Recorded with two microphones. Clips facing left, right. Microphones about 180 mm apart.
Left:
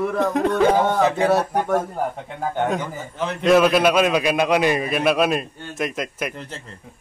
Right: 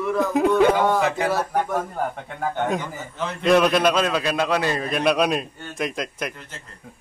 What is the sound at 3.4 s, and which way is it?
A man's voice, centre (ahead or behind).